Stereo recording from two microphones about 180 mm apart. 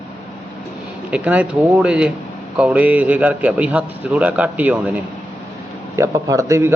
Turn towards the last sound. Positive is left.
turn(degrees=-15)  # may be behind; listen again after turning